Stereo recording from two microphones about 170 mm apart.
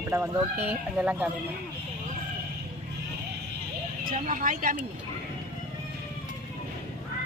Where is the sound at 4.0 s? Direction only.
55° right (ahead or behind).